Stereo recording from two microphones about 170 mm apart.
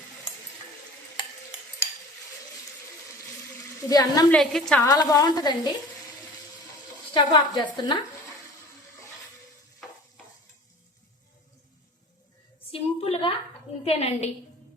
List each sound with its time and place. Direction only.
3.8 s a woman's voice: 20° left (ahead or behind)
4.3 s a woman's voice: centre (ahead or behind)
4.8 s a woman's voice: 20° left (ahead or behind)
7.1 s a woman's voice: 25° left (ahead or behind)
12.7 s a sound: 35° left (ahead or behind)
13.8 s a woman's voice: 35° left (ahead or behind)